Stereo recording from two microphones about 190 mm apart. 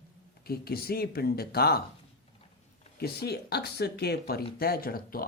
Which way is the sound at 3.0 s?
55° left (ahead or behind).